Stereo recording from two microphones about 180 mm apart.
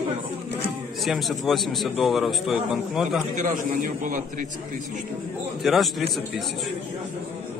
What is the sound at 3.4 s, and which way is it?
A man's voice, 45° right (ahead or behind).